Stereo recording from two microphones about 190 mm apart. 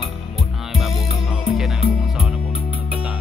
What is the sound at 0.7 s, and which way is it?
Music, centre (ahead or behind).